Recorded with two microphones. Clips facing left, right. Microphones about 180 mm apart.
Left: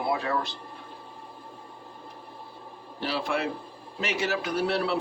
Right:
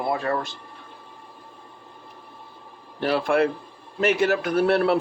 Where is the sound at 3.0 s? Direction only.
55° right (ahead or behind).